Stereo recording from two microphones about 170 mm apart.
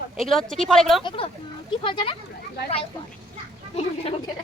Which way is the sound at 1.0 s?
30° left (ahead or behind).